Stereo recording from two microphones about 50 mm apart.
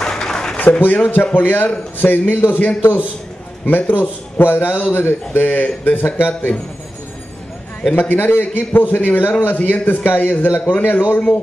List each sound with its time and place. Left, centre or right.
0.0 s a sound: centre
0.6 s a man's voice: left
7.9 s a man's voice: left